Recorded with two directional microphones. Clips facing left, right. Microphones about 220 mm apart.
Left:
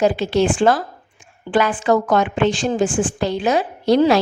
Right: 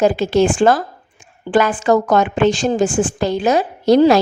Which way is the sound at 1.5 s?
45° right (ahead or behind).